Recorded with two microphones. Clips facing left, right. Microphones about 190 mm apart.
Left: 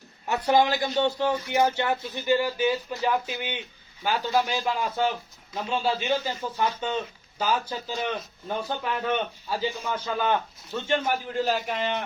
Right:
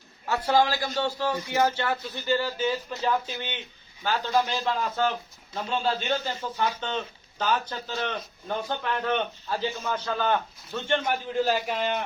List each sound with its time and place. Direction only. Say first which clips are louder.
0.3 s a man's voice: left 1 dB; 20° left (ahead or behind); by 12.0 s 5° right (ahead or behind)